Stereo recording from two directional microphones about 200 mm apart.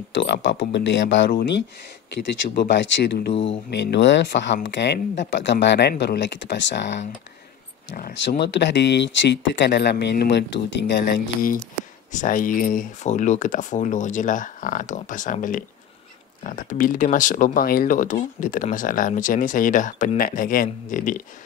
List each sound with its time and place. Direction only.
0.1 s speech: 65° left (ahead or behind)
2.5 s speech: 60° left (ahead or behind)
7.9 s speech: 50° left (ahead or behind)